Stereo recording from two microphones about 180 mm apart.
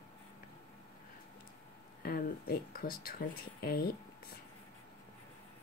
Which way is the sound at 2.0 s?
55° left (ahead or behind).